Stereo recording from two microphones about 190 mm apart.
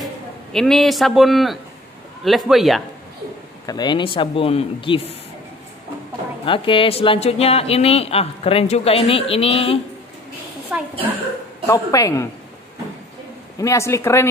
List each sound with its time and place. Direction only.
0.0 s a man's voice: centre (ahead or behind)
3.6 s speech: 20° left (ahead or behind)
6.4 s speech: 25° left (ahead or behind)
10.7 s a woman's voice: 5° right (ahead or behind)
11.6 s speech: 15° left (ahead or behind)
13.6 s speech: 15° left (ahead or behind)